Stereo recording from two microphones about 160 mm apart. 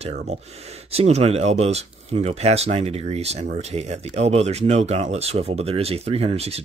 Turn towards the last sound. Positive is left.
turn(degrees=-40)  # may be behind; listen again after turning